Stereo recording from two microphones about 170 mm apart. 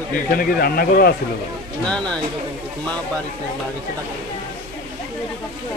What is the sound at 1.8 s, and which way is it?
Speech, 5° left (ahead or behind).